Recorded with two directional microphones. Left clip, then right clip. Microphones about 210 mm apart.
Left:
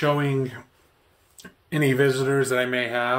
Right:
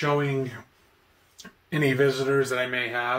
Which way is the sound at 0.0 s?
60° left (ahead or behind).